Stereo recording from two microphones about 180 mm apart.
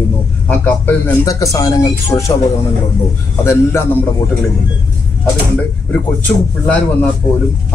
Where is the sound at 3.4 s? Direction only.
15° left (ahead or behind).